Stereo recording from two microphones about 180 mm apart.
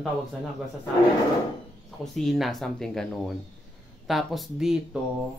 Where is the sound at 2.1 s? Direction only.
Centre (ahead or behind).